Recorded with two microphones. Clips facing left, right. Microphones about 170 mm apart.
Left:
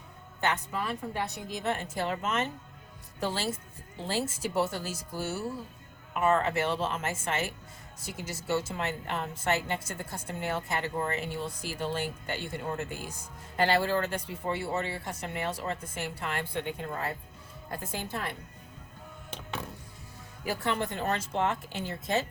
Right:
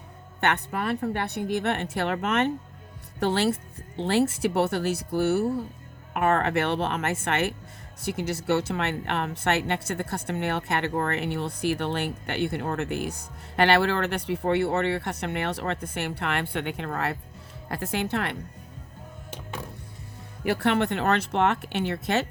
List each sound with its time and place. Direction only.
0.3 s a woman's voice: 65° right (ahead or behind)
20.4 s a woman's voice: 70° right (ahead or behind)